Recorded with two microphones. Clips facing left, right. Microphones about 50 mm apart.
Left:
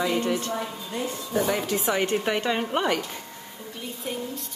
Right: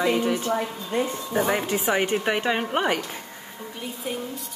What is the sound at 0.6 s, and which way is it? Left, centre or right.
Speech, right.